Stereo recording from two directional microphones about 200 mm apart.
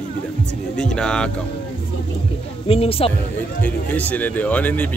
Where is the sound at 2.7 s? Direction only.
30° left (ahead or behind).